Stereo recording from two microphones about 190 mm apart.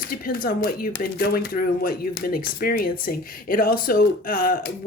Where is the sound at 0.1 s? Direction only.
50° left (ahead or behind).